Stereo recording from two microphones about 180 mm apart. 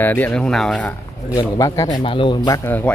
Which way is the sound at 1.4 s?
20° left (ahead or behind).